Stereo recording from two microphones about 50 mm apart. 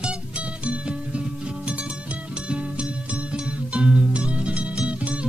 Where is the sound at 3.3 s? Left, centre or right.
Centre.